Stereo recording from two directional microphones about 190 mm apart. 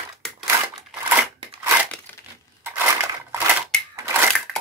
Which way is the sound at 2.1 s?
10° left (ahead or behind).